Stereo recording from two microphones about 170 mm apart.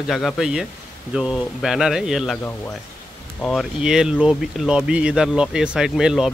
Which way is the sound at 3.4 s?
Centre (ahead or behind).